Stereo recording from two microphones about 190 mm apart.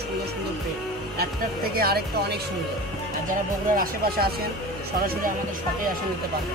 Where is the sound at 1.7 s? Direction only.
55° right (ahead or behind).